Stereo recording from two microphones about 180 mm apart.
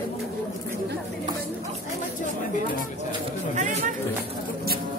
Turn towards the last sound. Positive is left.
turn(degrees=-40)  # may be behind; listen again after turning